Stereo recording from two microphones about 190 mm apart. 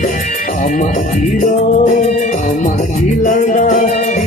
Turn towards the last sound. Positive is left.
turn(degrees=40)  # may be behind; listen again after turning